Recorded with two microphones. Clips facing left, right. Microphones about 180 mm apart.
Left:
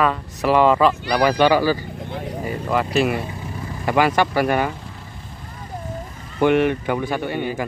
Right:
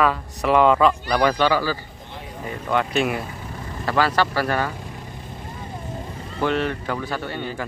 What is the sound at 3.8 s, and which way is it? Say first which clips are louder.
Speech: left 3 dB; 15° left (ahead or behind).